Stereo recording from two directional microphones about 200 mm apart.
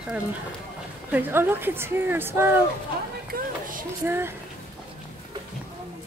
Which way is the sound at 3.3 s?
45° right (ahead or behind).